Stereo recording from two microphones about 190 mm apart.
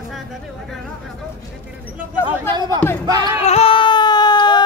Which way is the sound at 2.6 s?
20° right (ahead or behind).